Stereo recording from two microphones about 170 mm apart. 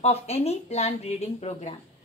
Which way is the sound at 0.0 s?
40° left (ahead or behind).